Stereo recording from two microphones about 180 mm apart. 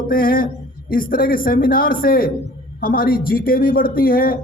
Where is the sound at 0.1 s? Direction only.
55° left (ahead or behind).